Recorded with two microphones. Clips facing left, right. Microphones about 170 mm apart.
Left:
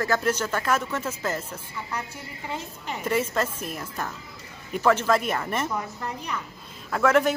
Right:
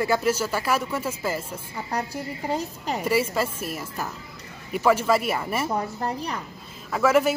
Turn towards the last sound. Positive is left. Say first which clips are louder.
# right 1 dB
turn(degrees=-5)  # may be behind; listen again after turning